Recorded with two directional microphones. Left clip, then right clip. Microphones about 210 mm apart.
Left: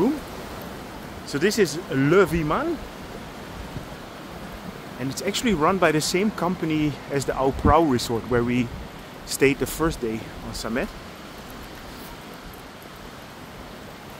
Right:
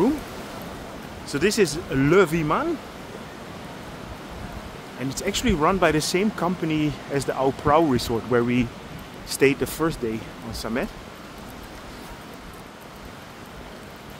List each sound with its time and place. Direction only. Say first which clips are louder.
1.3 s speech: even; 5° right (ahead or behind)
5.1 s speech: even; centre (ahead or behind)